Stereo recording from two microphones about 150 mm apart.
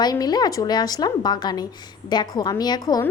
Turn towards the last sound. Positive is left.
turn(degrees=25)  # may be behind; listen again after turning